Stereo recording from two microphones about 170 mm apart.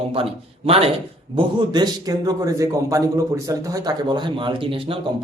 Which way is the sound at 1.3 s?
25° right (ahead or behind).